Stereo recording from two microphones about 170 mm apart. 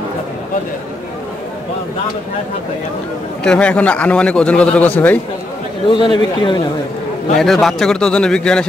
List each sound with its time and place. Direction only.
3.4 s a man's voice: 5° left (ahead or behind)
5.9 s speech: 30° left (ahead or behind)
7.3 s speech: centre (ahead or behind)